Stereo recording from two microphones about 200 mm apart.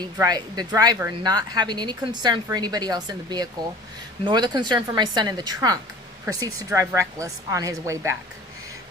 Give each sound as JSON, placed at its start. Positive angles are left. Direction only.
{"t": 0.0, "sound": "a woman's voice", "side_deg": -20}